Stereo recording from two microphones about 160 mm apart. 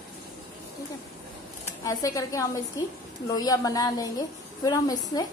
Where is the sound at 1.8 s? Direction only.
20° left (ahead or behind).